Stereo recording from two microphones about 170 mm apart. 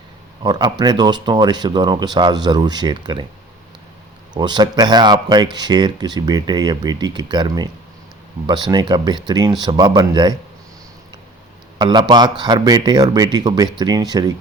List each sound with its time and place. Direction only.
0.4 s speech: 25° right (ahead or behind)
4.4 s speech: 25° right (ahead or behind)
11.8 s speech: 25° right (ahead or behind)